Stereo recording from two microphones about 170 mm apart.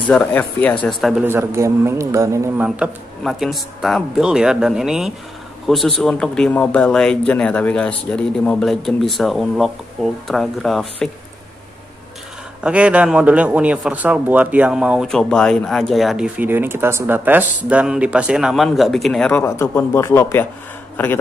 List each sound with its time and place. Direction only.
0.1 s speech: 10° left (ahead or behind)
1.2 s speech: 15° right (ahead or behind); by 11.1 s centre (ahead or behind)
12.6 s speech: 5° right (ahead or behind); by 20.4 s 15° left (ahead or behind)